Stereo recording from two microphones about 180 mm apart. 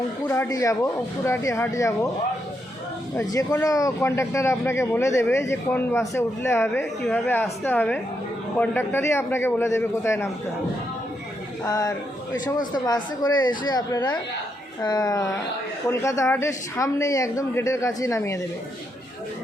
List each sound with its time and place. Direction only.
0.3 s a man's voice: 15° left (ahead or behind)
3.2 s a man's voice: 20° left (ahead or behind)
11.6 s a man's voice: 20° left (ahead or behind)